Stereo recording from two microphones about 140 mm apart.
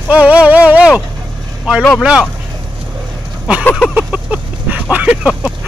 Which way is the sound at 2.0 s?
5° right (ahead or behind).